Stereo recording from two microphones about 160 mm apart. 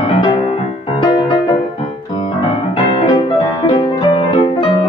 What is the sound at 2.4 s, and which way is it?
Piano, 35° left (ahead or behind).